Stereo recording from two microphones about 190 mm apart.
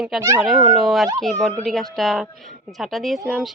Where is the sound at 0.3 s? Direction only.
Centre (ahead or behind).